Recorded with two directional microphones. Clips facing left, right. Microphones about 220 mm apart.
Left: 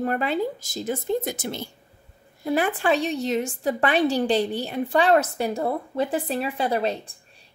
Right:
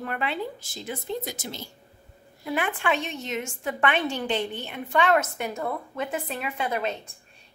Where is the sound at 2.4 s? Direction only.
35° left (ahead or behind).